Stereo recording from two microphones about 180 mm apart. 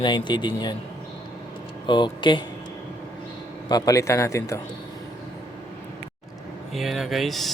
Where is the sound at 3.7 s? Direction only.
20° left (ahead or behind).